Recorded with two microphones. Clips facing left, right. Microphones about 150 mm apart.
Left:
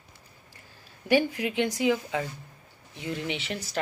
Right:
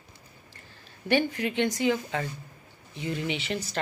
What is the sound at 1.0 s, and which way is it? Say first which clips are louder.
A woman's voice: left 1 dB; 5° left (ahead or behind).